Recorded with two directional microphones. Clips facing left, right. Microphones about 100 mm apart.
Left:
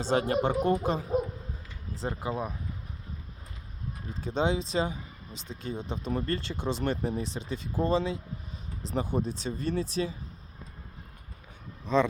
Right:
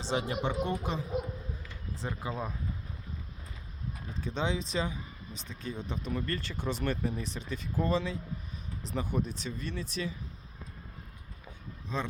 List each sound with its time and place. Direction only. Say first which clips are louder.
0.0 s speech: left 6 dB; 45° left (ahead or behind)
2.0 s speech: left 4 dB; 25° left (ahead or behind)
2.3 s speech: left 4 dB; 15° left (ahead or behind)
4.1 s speech: left 5 dB; 35° left (ahead or behind)
11.9 s speech: left 11 dB; 90° left